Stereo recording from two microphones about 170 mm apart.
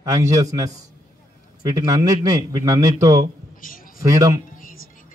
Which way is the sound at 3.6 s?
55° left (ahead or behind).